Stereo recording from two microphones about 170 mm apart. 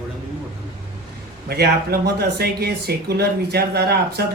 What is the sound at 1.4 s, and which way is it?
Speech, 65° right (ahead or behind).